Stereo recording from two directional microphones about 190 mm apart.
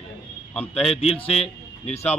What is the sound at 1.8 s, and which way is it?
Speech, 35° left (ahead or behind).